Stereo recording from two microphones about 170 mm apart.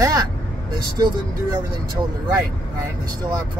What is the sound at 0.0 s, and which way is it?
Vehicle, 20° right (ahead or behind).